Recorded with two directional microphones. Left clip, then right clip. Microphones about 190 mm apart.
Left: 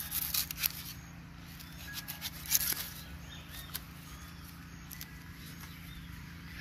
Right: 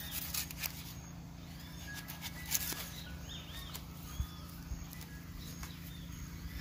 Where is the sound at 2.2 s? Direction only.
5° right (ahead or behind).